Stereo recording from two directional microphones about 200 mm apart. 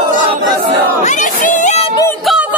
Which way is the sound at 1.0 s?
40° left (ahead or behind).